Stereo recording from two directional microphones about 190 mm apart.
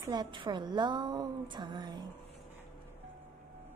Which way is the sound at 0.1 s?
25° right (ahead or behind).